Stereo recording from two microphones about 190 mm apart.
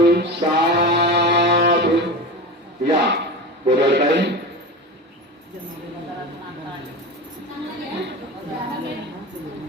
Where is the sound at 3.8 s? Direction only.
65° right (ahead or behind).